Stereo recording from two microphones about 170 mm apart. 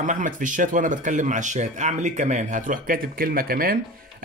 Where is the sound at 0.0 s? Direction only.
50° right (ahead or behind).